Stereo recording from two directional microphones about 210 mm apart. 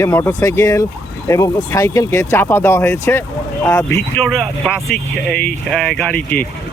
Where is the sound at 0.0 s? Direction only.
15° left (ahead or behind).